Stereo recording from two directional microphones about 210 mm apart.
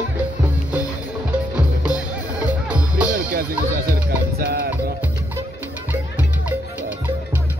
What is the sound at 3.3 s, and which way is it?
Music, 45° right (ahead or behind).